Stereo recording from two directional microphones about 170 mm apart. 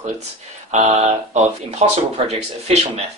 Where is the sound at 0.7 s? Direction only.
40° right (ahead or behind).